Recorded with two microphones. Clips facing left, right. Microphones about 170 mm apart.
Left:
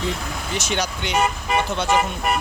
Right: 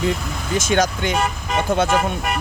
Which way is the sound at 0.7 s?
45° right (ahead or behind).